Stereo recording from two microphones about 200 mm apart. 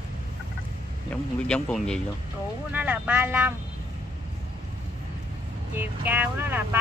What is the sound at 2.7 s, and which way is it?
Speech, 5° right (ahead or behind).